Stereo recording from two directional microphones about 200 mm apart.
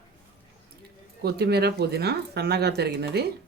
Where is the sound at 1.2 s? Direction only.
55° right (ahead or behind).